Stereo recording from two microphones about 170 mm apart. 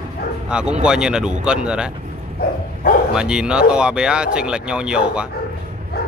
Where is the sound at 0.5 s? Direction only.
5° right (ahead or behind).